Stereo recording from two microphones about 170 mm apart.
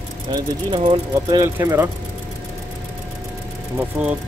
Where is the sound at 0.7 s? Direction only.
25° right (ahead or behind).